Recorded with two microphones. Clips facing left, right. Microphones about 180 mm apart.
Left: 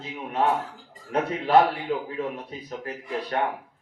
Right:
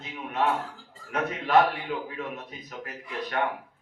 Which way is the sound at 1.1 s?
30° left (ahead or behind).